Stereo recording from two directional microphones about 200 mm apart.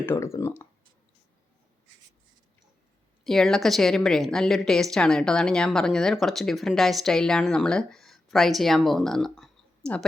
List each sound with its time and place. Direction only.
0.0 s speech: 10° left (ahead or behind)
3.2 s a woman's voice: centre (ahead or behind)